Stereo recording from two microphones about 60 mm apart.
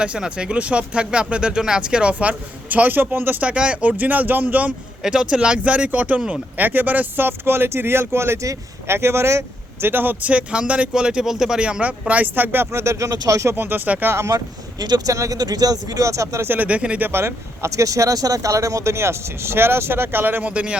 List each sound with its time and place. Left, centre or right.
0.0 s speech: centre; by 3.4 s right
3.4 s speech: centre
5.0 s speech: centre
6.6 s speech: right
9.8 s speech: right
12.7 s speech: right
13.6 s speech: right
13.8 s speech: right
15.0 s speech: right
16.5 s speech: right
17.0 s speech: right
20.5 s speech: centre